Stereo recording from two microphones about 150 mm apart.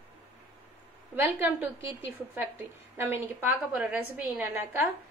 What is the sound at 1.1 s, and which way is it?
A woman's voice, 15° right (ahead or behind).